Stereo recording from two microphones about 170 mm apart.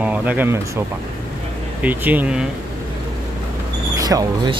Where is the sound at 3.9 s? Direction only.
20° right (ahead or behind).